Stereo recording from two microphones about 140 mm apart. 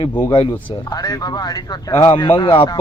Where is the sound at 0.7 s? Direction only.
25° left (ahead or behind).